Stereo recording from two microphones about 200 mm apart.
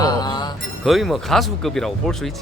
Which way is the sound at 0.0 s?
20° left (ahead or behind).